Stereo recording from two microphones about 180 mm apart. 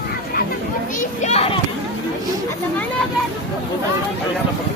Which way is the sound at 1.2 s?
35° left (ahead or behind).